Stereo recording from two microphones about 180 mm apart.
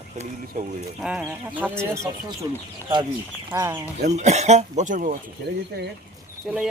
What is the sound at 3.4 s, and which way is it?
Speech, 15° right (ahead or behind).